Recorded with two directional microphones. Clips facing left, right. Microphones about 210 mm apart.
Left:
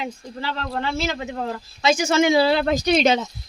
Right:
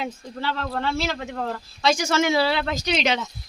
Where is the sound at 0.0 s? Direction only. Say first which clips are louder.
Even; centre (ahead or behind).